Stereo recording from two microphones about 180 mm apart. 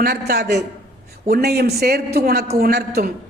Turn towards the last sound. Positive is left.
turn(degrees=-60)  # may be behind; listen again after turning